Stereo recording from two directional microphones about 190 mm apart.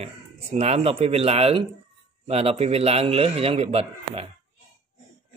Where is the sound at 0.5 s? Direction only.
30° right (ahead or behind).